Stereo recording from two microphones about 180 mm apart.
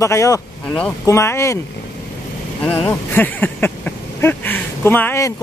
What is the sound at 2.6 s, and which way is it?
Speech, 10° left (ahead or behind).